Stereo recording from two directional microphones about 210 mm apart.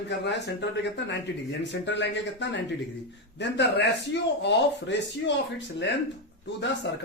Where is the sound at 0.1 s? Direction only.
55° left (ahead or behind).